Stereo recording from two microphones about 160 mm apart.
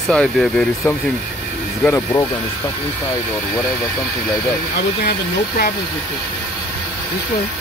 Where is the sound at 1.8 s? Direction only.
15° left (ahead or behind).